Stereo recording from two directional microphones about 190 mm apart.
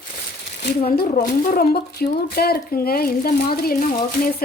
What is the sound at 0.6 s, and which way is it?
Speech, 55° left (ahead or behind).